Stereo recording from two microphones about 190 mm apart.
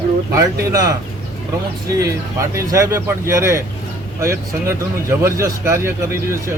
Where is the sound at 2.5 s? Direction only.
15° right (ahead or behind).